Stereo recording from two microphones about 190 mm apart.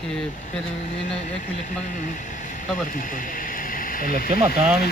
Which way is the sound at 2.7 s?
45° left (ahead or behind).